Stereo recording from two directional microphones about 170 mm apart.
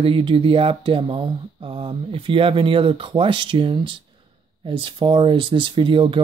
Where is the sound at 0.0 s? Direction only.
30° right (ahead or behind).